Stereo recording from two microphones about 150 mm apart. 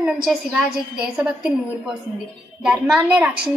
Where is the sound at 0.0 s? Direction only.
5° right (ahead or behind).